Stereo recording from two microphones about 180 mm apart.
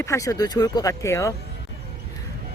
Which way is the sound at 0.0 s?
15° left (ahead or behind).